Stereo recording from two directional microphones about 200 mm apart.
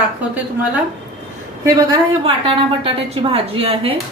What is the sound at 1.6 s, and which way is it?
A woman's voice, 25° right (ahead or behind).